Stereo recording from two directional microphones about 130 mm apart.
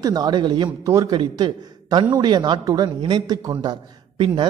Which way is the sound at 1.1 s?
35° right (ahead or behind).